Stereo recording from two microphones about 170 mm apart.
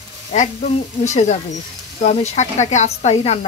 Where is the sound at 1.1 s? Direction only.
45° left (ahead or behind).